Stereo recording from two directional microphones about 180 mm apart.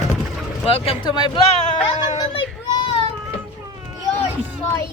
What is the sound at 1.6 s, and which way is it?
Speech, 40° left (ahead or behind).